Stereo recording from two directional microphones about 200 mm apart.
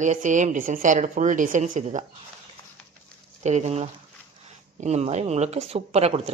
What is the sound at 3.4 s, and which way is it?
Speech, 35° right (ahead or behind).